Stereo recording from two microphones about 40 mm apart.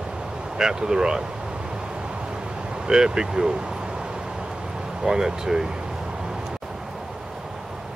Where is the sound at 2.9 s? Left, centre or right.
Centre.